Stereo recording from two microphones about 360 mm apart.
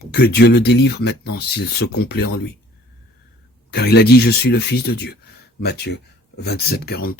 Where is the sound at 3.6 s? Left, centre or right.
Left.